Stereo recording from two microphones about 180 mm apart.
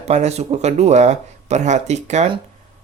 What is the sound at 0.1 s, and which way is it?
Speech, 40° right (ahead or behind).